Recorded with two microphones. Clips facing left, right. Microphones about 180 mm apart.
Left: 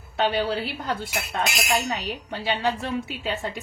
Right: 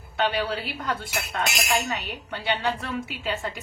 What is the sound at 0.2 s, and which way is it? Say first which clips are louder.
A woman's voice: left 2 dB; 30° left (ahead or behind).